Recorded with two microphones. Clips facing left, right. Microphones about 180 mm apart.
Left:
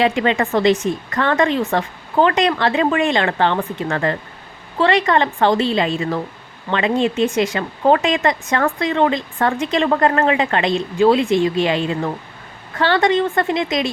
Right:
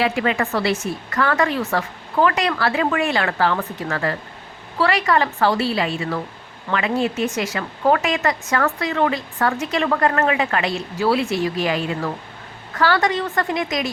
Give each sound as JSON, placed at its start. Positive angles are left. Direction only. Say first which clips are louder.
{"t": 0.0, "sound": "speech", "louder": "left 3 dB", "side_deg": 25}
{"t": 0.5, "sound": "a woman's voice", "louder": "left 6 dB", "side_deg": 15}
{"t": 1.1, "sound": "speech", "louder": "left 2 dB", "side_deg": 30}
{"t": 12.8, "sound": "speech", "louder": "left 3 dB", "side_deg": 25}